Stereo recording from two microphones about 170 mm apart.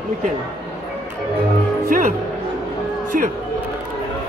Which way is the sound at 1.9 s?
50° right (ahead or behind).